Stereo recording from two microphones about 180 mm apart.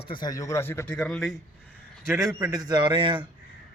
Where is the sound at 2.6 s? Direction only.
25° right (ahead or behind).